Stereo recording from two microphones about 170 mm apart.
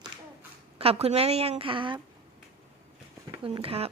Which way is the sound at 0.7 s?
35° right (ahead or behind).